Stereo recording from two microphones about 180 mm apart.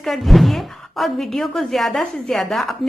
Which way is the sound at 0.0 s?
Centre (ahead or behind).